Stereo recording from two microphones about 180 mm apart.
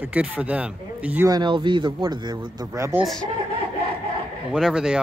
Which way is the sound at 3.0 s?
Centre (ahead or behind).